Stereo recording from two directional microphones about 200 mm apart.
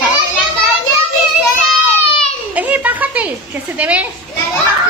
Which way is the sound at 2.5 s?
5° right (ahead or behind).